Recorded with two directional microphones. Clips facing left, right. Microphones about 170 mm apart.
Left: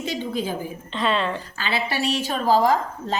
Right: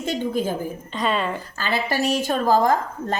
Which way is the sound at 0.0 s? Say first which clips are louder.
Right 3 dB; 50° right (ahead or behind).